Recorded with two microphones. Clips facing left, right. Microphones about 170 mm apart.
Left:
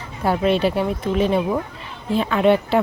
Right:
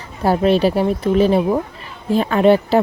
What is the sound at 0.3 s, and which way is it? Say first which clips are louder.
Speech: right 4 dB; 40° right (ahead or behind).